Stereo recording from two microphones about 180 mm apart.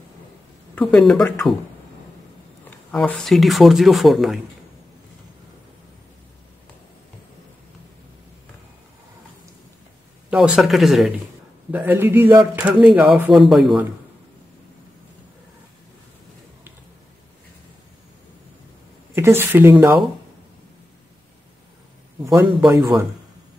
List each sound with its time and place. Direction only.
0.7 s speech: 5° left (ahead or behind)
2.9 s speech: 5° left (ahead or behind)
10.3 s speech: 5° right (ahead or behind)
19.1 s speech: 15° right (ahead or behind)
22.2 s speech: 15° right (ahead or behind)